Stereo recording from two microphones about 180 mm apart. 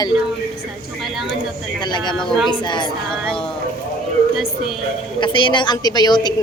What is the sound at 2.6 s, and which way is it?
Speech, 25° left (ahead or behind).